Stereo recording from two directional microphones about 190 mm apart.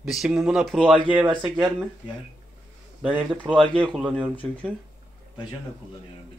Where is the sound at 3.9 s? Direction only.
5° right (ahead or behind).